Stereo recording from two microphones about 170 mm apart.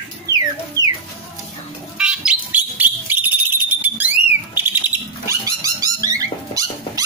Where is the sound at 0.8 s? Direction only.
20° left (ahead or behind).